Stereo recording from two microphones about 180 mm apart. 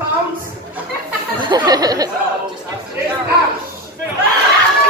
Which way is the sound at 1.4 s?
25° right (ahead or behind).